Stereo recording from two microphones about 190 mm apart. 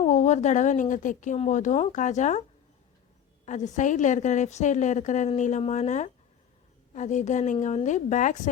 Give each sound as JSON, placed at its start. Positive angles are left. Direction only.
{"t": 0.0, "sound": "a woman's voice", "side_deg": 40}
{"t": 3.4, "sound": "a woman's voice", "side_deg": 40}